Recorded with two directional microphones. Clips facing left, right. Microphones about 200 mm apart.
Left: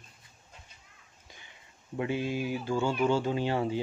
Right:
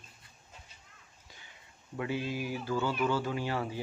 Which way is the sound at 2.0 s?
20° left (ahead or behind).